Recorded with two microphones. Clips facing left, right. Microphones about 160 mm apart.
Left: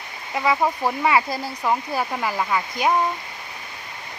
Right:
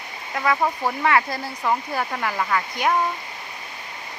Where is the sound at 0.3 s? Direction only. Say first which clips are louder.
Left 1 dB; 10° left (ahead or behind).